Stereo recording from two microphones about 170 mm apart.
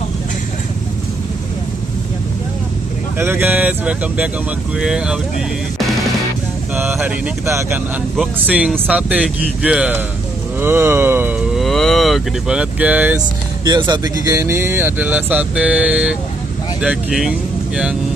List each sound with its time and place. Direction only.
3.2 s speech: 15° right (ahead or behind)
6.7 s speech: 10° right (ahead or behind)
13.7 s speech: 25° right (ahead or behind); by 17.3 s 5° right (ahead or behind)